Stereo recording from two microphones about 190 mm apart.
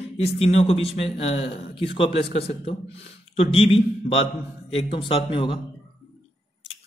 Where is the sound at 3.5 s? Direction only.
30° left (ahead or behind).